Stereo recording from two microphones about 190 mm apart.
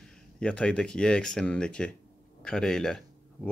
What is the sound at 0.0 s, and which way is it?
Speech, 5° left (ahead or behind).